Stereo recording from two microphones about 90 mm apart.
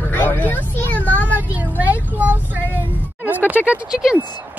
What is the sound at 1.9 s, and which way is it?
Speech, 15° right (ahead or behind).